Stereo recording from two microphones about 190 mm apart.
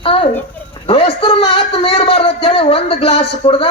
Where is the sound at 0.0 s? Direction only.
30° left (ahead or behind).